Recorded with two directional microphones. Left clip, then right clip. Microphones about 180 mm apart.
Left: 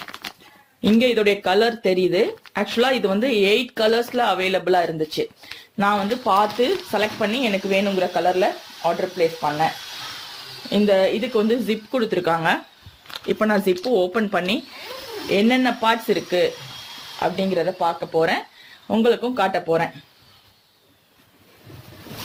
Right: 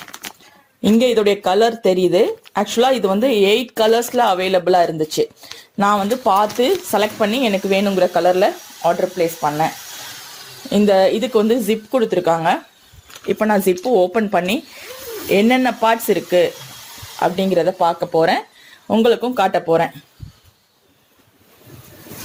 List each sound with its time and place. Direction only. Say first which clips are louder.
0.8 s speech: right 3 dB; 35° right (ahead or behind); by 9.6 s 55° right (ahead or behind)
10.7 s speech: right 4 dB; 50° right (ahead or behind)